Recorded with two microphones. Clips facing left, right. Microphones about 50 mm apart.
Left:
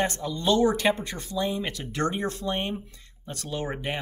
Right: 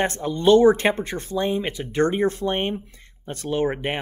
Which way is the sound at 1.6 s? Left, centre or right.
Right.